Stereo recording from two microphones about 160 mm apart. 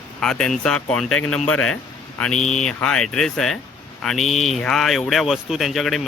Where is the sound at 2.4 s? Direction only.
45° left (ahead or behind).